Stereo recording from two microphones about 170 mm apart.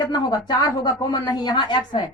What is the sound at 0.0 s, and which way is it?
A woman's voice, 25° left (ahead or behind).